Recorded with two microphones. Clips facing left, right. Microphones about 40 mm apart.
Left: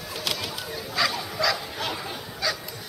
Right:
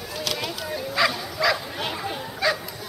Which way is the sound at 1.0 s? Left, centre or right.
Centre.